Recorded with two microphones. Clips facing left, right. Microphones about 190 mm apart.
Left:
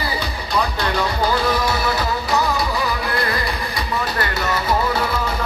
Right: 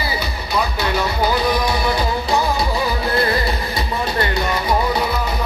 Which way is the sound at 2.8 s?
30° right (ahead or behind).